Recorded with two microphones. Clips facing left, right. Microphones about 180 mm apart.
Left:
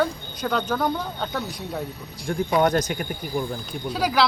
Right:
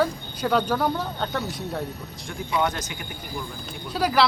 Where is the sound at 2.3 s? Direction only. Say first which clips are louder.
Left 5 dB; 40° left (ahead or behind).